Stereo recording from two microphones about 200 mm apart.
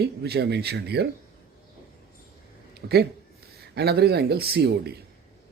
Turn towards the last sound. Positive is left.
turn(degrees=-55)  # may be behind; listen again after turning